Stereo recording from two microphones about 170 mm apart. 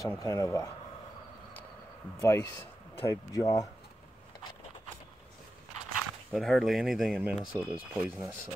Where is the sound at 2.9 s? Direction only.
20° left (ahead or behind).